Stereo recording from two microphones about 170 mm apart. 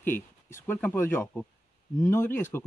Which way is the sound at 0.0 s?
15° left (ahead or behind).